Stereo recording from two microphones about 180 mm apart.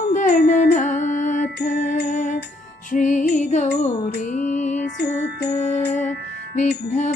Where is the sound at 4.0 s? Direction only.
60° left (ahead or behind).